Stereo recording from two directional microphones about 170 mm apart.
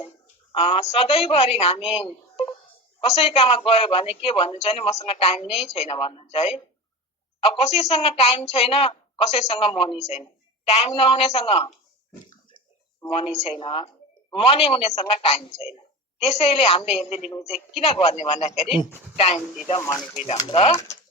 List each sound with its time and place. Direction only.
0.5 s a woman's voice: 35° left (ahead or behind)
13.1 s a woman's voice: 35° left (ahead or behind)
20.2 s a woman's voice: 35° left (ahead or behind)